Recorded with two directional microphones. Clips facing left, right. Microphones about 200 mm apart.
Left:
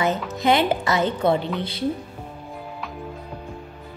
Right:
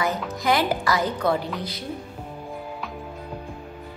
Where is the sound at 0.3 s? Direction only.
25° left (ahead or behind).